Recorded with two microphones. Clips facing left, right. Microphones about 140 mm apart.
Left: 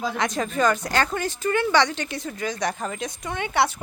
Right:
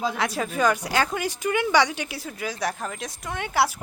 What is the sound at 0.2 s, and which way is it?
Speech, 5° right (ahead or behind).